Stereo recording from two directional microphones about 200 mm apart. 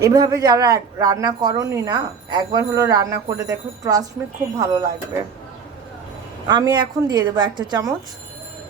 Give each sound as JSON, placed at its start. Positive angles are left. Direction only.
{"t": 0.0, "sound": "speech", "side_deg": -15}
{"t": 6.5, "sound": "speech", "side_deg": -20}